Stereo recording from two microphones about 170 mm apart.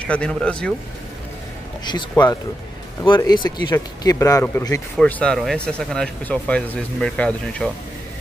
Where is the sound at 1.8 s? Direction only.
25° left (ahead or behind).